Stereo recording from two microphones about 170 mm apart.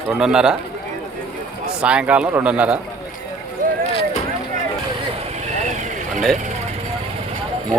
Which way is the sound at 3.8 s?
35° left (ahead or behind).